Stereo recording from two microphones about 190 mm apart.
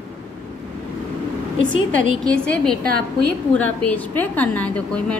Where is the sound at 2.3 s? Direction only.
5° left (ahead or behind).